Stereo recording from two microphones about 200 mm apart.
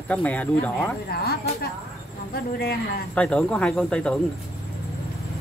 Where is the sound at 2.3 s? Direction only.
50° left (ahead or behind).